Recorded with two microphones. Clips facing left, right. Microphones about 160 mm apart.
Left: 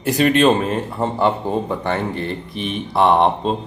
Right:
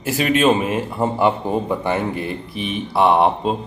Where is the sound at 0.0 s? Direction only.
5° right (ahead or behind).